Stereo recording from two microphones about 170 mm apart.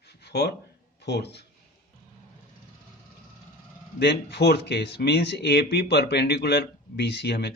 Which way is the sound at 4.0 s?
75° left (ahead or behind).